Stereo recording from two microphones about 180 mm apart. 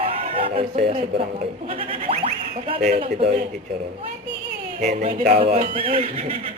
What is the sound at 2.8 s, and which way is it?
Speech, 45° right (ahead or behind).